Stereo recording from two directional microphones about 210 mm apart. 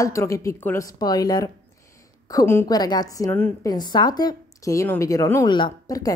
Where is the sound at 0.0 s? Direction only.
15° left (ahead or behind).